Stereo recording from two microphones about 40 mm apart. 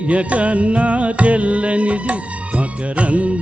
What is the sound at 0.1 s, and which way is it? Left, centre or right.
Music, right.